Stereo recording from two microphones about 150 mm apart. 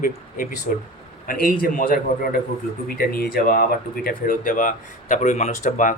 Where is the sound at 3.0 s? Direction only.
90° left.